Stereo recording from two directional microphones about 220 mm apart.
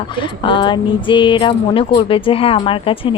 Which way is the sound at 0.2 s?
20° left (ahead or behind).